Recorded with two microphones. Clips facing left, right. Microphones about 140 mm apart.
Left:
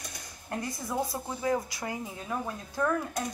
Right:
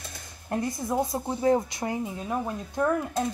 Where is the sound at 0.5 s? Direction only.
25° right (ahead or behind).